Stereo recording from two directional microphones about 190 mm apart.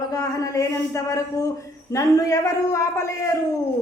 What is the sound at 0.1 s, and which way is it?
A man's voice, 20° left (ahead or behind).